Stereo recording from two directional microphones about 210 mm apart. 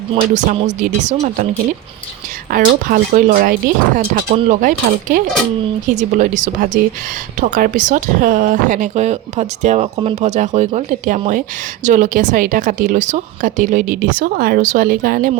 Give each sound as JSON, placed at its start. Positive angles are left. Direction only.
{"t": 0.2, "sound": "speech", "side_deg": -35}
{"t": 2.5, "sound": "speech", "side_deg": -40}
{"t": 5.9, "sound": "speech", "side_deg": -35}